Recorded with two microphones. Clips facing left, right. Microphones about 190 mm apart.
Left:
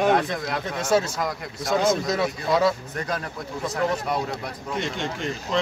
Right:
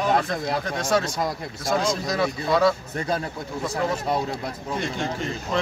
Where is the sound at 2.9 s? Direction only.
25° right (ahead or behind).